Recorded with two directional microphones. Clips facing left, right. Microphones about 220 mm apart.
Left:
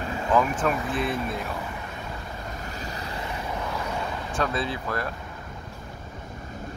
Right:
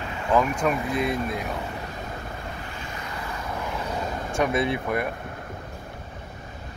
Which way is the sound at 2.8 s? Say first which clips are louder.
Left 3 dB; 35° left (ahead or behind).